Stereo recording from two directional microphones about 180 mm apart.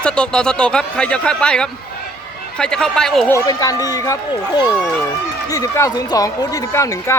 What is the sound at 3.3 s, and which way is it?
Speech, 20° left (ahead or behind).